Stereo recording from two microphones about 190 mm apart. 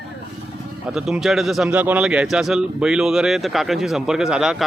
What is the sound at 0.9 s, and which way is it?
A man's voice, centre (ahead or behind).